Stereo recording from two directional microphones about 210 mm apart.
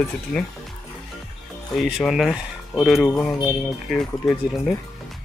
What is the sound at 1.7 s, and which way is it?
Speech, centre (ahead or behind).